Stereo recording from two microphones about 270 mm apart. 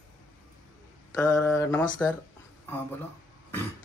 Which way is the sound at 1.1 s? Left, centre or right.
Centre.